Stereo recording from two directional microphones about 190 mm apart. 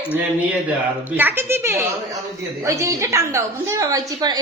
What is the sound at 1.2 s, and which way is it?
A woman's voice, 10° right (ahead or behind).